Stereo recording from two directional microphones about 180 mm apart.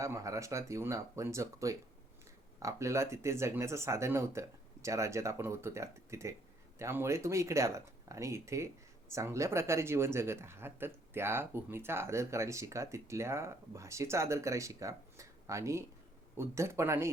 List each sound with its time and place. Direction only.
0.0 s speech: 15° right (ahead or behind)